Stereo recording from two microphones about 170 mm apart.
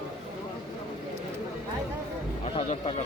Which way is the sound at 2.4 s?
35° left (ahead or behind).